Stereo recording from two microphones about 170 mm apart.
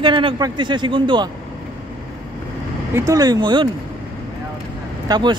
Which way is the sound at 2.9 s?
20° right (ahead or behind).